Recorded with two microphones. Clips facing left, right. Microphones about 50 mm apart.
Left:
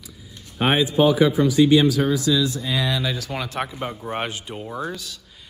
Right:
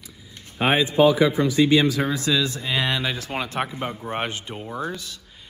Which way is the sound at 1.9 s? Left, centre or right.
Right.